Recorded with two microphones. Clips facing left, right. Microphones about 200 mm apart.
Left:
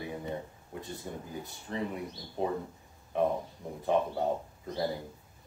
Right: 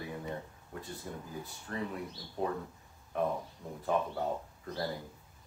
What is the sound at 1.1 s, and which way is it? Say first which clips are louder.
Speech: left 2 dB; 25° left (ahead or behind).